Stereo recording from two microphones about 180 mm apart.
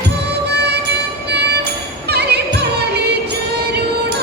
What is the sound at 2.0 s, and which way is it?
Music, 65° right (ahead or behind).